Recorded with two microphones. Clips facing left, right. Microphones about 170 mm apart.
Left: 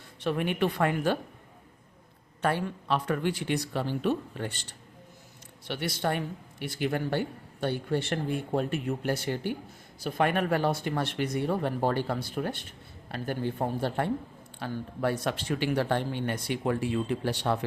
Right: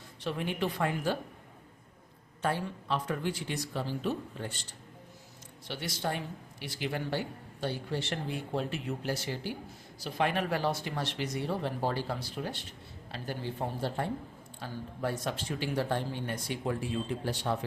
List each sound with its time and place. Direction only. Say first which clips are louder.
0.2 s speech: left 5 dB; 60° left (ahead or behind)
2.4 s speech: left 4 dB; 70° left (ahead or behind)
5.6 s speech: left 5 dB; 60° left (ahead or behind)